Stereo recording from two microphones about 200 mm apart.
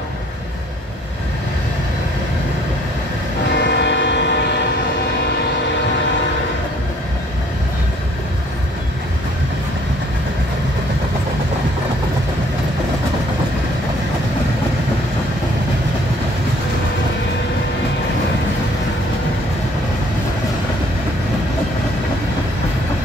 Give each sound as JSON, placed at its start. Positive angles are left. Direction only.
{"t": 3.5, "sound": "train", "side_deg": 60}